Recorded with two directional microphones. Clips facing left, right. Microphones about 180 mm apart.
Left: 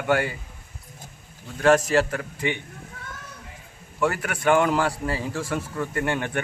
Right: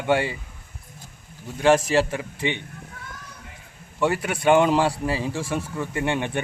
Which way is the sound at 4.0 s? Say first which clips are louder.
Right 2 dB; 25° right (ahead or behind).